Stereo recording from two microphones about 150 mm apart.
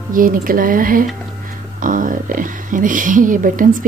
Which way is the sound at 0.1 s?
70° right (ahead or behind).